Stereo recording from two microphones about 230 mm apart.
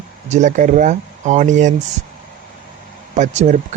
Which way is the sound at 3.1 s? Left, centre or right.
Right.